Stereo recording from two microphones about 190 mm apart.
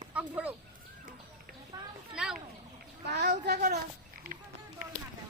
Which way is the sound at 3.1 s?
65° right (ahead or behind).